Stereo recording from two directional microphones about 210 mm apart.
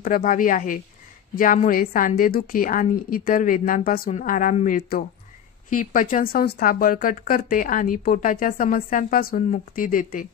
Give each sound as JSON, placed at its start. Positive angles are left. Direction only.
{"t": 0.0, "sound": "speech", "side_deg": 40}